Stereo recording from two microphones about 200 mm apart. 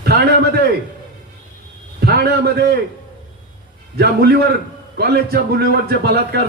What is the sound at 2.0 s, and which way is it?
Speech, 55° right (ahead or behind).